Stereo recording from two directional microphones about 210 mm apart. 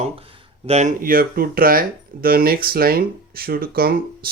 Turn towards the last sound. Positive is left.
turn(degrees=-45)  # may be behind; listen again after turning